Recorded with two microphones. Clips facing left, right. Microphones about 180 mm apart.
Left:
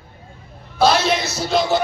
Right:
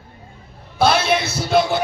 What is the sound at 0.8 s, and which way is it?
Music, 60° right (ahead or behind).